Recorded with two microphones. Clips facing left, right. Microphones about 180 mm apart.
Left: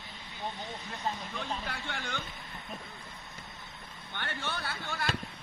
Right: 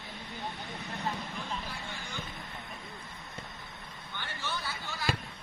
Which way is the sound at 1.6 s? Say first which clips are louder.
Left 3 dB; 80° left.